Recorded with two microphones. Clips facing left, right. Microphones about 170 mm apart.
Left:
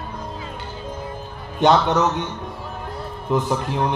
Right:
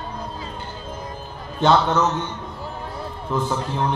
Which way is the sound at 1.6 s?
15° left (ahead or behind).